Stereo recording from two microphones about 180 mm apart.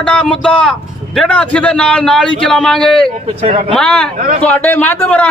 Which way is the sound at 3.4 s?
35° right (ahead or behind).